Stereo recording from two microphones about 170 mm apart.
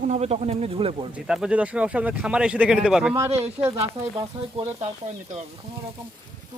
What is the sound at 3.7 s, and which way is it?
Speech, 35° right (ahead or behind).